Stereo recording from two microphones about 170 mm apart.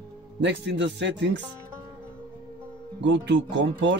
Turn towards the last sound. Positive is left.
turn(degrees=-90)